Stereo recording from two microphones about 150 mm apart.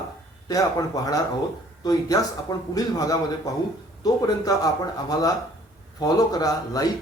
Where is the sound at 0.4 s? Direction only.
25° left (ahead or behind).